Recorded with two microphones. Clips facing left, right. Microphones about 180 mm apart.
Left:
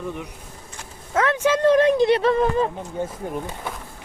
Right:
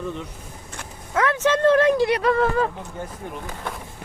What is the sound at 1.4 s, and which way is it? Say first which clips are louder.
Speech: left 1 dB; 10° left (ahead or behind).